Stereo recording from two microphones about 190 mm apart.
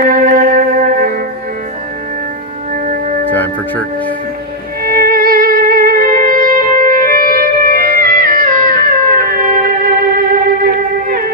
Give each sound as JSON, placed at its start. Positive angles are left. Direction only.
{"t": 0.0, "sound": "music", "side_deg": -50}
{"t": 2.7, "sound": "music", "side_deg": -45}
{"t": 3.3, "sound": "music", "side_deg": 10}
{"t": 4.8, "sound": "violin", "side_deg": -50}